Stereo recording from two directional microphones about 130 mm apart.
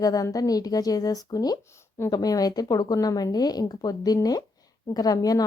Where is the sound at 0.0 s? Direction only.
25° left (ahead or behind).